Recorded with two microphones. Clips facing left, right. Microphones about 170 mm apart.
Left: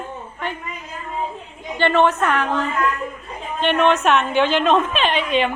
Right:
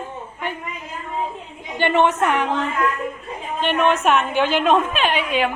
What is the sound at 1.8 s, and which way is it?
Speech, 15° right (ahead or behind).